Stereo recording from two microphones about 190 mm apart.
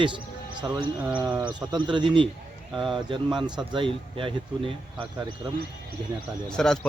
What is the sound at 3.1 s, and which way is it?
Speech, 25° right (ahead or behind).